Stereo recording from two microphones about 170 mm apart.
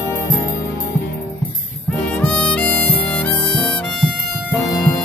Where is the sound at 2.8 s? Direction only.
10° left (ahead or behind).